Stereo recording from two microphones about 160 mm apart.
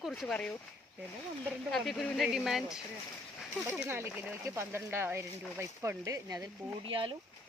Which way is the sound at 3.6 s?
10° right (ahead or behind).